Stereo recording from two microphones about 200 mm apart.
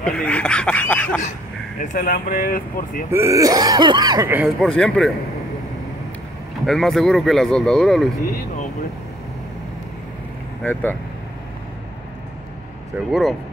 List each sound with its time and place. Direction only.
0.0 s speech: 5° left (ahead or behind)
1.9 s speech: 45° left (ahead or behind)
3.1 s throat clearing: 15° right (ahead or behind)
4.3 s throat clearing: 5° right (ahead or behind)
4.6 s speech: 5° left (ahead or behind)
6.6 s speech: centre (ahead or behind)
10.6 s speech: 10° left (ahead or behind)
13.1 s speech: centre (ahead or behind)